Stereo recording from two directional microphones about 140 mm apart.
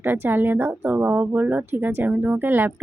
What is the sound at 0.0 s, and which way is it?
Speech, 15° right (ahead or behind).